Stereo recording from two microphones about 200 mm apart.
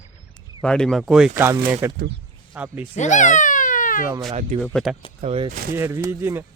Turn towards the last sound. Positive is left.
turn(degrees=-15)  # may be behind; listen again after turning